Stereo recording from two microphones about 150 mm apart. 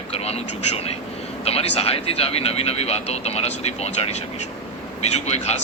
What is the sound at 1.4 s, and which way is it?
Speech, 40° left (ahead or behind).